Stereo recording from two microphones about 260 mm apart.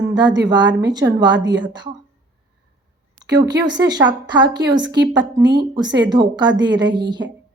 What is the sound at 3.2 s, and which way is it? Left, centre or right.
A woman's voice, centre.